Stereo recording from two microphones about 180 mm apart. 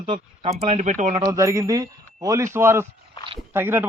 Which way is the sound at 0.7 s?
40° right (ahead or behind).